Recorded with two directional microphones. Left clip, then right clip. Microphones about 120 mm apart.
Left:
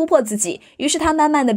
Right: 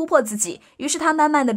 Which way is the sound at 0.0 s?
25° left (ahead or behind).